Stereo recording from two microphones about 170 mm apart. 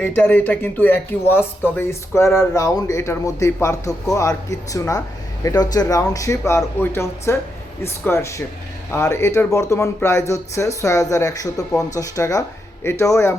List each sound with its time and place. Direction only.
0.0 s speech: 10° left (ahead or behind)